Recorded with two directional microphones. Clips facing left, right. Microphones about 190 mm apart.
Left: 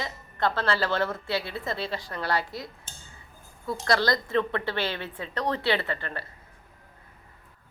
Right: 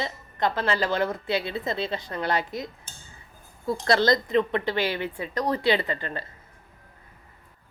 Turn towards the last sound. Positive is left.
turn(degrees=-15)  # may be behind; listen again after turning